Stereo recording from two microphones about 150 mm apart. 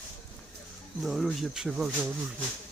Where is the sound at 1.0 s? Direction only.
Centre (ahead or behind).